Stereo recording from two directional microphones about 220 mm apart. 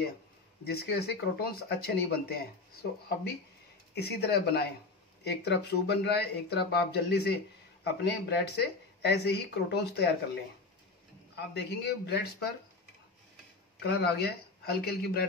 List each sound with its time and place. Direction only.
0.7 s speech: 45° left (ahead or behind)
11.3 s speech: 50° left (ahead or behind)
13.8 s speech: 45° left (ahead or behind)